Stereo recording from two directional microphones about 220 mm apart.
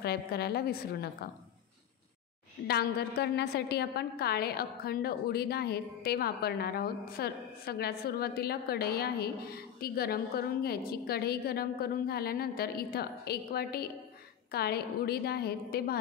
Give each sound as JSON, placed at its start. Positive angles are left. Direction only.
{"t": 0.0, "sound": "a woman's voice", "side_deg": 45}
{"t": 2.6, "sound": "a woman's voice", "side_deg": 45}